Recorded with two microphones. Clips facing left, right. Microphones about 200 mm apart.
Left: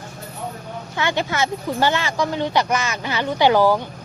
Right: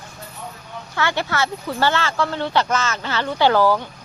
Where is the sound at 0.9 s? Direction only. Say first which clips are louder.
Even; 15° left (ahead or behind).